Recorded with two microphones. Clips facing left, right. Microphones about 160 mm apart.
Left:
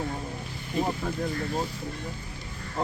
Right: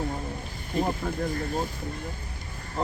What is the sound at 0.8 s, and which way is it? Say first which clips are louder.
Speech: right 1 dB; centre (ahead or behind).